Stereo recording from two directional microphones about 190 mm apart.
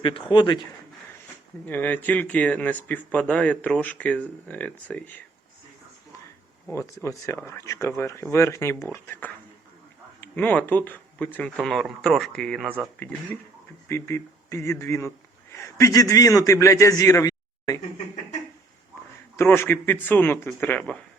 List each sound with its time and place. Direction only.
0.3 s speech: 25° left (ahead or behind)
1.6 s speech: 10° left (ahead or behind)
6.7 s speech: 15° left (ahead or behind)
12.6 s speech: 10° right (ahead or behind)
13.0 s speech: 10° left (ahead or behind)
19.4 s speech: 10° left (ahead or behind)